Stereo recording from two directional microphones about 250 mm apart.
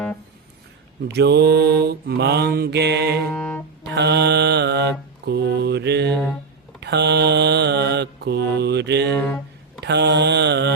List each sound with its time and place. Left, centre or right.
1.0 s mantra: right
3.3 s music: centre
3.8 s mantra: right
9.1 s a sound: centre
9.8 s mantra: right